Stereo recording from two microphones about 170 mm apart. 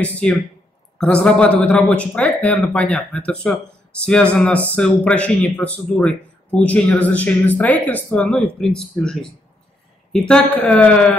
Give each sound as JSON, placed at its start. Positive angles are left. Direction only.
{"t": 0.0, "sound": "speech", "side_deg": 10}